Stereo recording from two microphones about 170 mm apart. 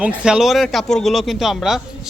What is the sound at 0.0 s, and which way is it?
Speech, 10° right (ahead or behind).